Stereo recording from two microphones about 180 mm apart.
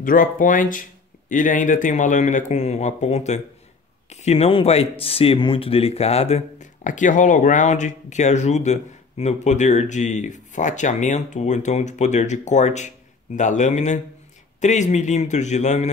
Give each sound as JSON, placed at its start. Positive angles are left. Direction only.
{"t": 0.0, "sound": "speech", "side_deg": 50}